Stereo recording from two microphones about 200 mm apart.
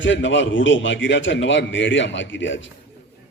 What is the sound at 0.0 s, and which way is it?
A man's voice, 70° left (ahead or behind).